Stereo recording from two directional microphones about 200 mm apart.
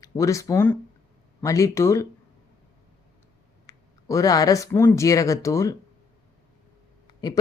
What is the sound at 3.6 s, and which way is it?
Speech, 15° left (ahead or behind).